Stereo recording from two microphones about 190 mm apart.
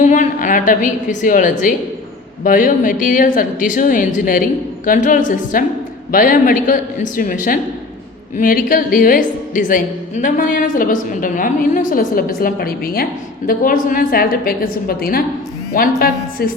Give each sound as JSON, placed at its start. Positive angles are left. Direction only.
{"t": 0.0, "sound": "a woman's voice", "side_deg": 40}